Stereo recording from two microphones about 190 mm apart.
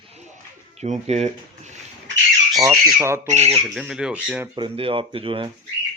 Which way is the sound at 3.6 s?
Centre (ahead or behind).